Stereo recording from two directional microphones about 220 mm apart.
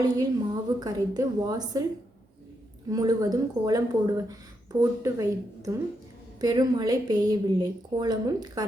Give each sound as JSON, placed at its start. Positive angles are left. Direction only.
{"t": 0.0, "sound": "speech", "side_deg": -15}
{"t": 2.9, "sound": "speech", "side_deg": -15}